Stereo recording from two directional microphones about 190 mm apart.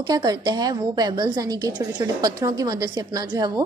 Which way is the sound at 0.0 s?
20° right (ahead or behind).